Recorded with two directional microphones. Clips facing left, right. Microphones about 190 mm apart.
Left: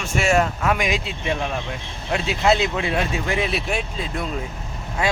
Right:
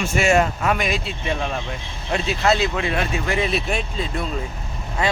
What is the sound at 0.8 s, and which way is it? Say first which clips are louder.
Speech: even; 15° left (ahead or behind).